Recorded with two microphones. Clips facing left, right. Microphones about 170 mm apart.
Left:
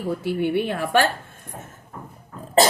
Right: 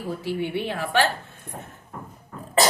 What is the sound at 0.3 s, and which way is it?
Speech, 50° left (ahead or behind).